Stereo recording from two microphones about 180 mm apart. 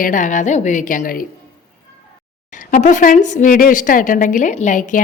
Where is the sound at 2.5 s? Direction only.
45° left (ahead or behind).